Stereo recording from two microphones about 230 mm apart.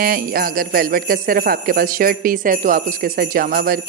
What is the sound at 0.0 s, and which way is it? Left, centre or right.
Speech, right.